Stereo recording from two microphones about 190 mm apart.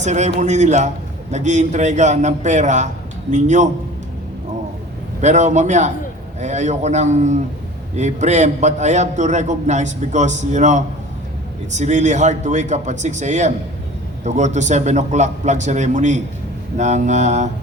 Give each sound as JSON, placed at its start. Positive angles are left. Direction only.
{"t": 0.0, "sound": "a man's voice", "side_deg": -40}
{"t": 5.2, "sound": "a man's voice", "side_deg": -40}